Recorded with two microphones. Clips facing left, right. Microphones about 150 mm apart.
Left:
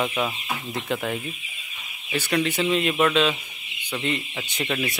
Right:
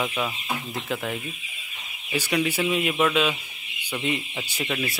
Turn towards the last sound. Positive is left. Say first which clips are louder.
# left 2 dB
turn(degrees=0)  # may be behind; listen again after turning